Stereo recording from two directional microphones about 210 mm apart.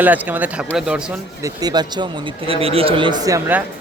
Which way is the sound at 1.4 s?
20° right (ahead or behind).